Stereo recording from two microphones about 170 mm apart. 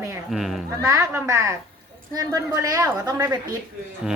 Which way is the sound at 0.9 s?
15° right (ahead or behind).